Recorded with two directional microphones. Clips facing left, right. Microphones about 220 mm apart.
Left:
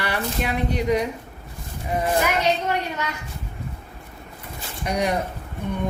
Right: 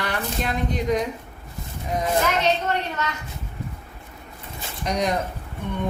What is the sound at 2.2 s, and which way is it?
Speech, 10° left (ahead or behind).